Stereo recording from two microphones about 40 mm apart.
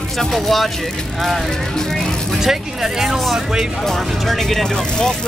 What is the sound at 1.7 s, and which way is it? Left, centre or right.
Speech, centre.